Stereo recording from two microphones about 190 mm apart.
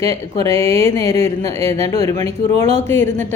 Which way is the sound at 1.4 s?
35° right (ahead or behind).